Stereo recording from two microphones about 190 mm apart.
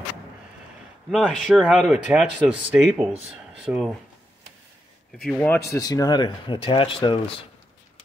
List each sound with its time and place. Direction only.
1.1 s speech: centre (ahead or behind)
5.2 s speech: 5° left (ahead or behind)
5.7 s speech: 20° left (ahead or behind)